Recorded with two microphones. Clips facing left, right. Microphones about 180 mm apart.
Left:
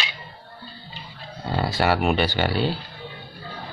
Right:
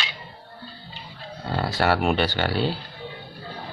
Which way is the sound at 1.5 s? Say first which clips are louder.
Left 1 dB; 5° left (ahead or behind).